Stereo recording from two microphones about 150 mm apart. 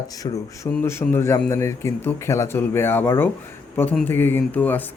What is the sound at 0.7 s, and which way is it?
A man's voice, 10° left (ahead or behind).